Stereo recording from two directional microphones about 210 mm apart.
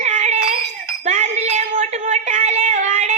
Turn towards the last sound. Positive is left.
turn(degrees=-35)  # may be behind; listen again after turning